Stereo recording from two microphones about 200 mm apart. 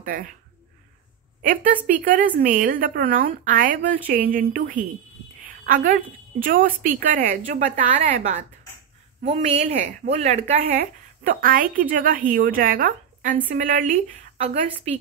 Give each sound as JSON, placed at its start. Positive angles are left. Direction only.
{"t": 0.0, "sound": "speech", "side_deg": -45}
{"t": 1.9, "sound": "a woman's voice", "side_deg": -40}
{"t": 11.2, "sound": "a woman's voice", "side_deg": -45}